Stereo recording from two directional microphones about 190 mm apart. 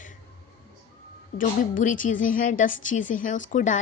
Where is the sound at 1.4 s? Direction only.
45° left (ahead or behind).